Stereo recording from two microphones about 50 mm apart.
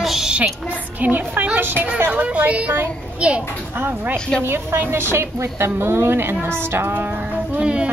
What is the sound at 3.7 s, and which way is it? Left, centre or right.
Speech, right.